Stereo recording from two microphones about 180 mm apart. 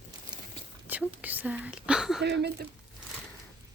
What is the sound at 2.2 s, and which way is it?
Speech, 70° right (ahead or behind).